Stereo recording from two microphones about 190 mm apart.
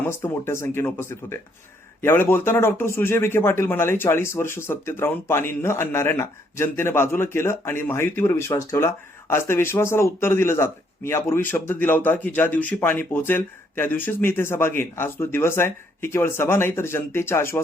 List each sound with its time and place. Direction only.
0.1 s a man's voice: 15° left (ahead or behind)